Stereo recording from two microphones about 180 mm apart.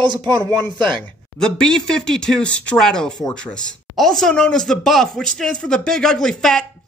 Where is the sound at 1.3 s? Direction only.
5° left (ahead or behind).